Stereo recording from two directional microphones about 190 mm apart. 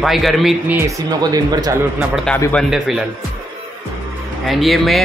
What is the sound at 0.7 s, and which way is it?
Speech, 15° right (ahead or behind).